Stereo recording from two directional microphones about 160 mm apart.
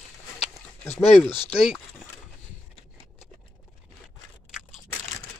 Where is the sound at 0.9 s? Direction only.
Centre (ahead or behind).